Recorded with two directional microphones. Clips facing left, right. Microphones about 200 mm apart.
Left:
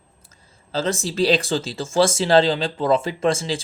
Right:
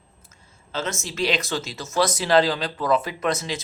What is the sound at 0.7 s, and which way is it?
Speech, 30° left (ahead or behind).